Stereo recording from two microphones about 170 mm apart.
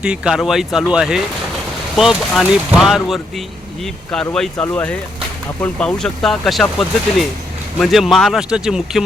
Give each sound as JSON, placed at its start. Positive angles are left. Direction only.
{"t": 0.0, "sound": "speech", "side_deg": -5}